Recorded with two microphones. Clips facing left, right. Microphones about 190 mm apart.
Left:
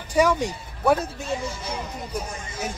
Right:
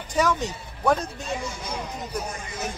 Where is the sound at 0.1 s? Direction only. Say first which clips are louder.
Left 3 dB; 10° left (ahead or behind).